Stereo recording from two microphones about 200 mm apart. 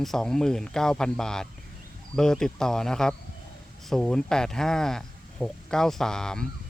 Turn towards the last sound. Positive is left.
turn(degrees=5)  # may be behind; listen again after turning